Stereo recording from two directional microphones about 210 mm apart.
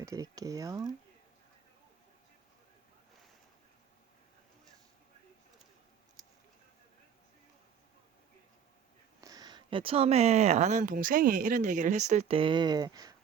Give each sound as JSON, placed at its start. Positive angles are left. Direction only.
{"t": 0.0, "sound": "speech", "side_deg": -15}
{"t": 9.2, "sound": "speech", "side_deg": -20}